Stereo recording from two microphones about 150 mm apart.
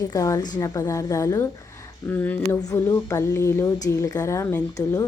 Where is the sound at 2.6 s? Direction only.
25° left (ahead or behind).